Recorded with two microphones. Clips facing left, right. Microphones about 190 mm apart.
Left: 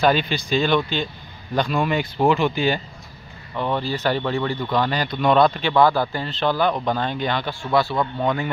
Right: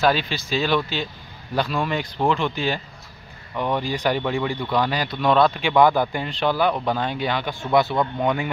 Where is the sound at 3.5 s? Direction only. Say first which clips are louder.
Even; 10° right (ahead or behind).